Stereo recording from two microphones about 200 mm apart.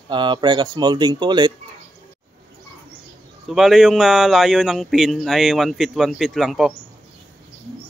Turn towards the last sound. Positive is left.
turn(degrees=0)  # may be behind; listen again after turning